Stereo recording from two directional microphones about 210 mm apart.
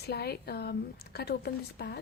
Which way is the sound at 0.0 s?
50° left (ahead or behind).